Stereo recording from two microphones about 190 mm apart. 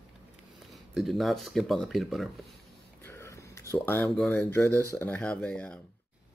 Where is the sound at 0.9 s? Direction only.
Centre (ahead or behind).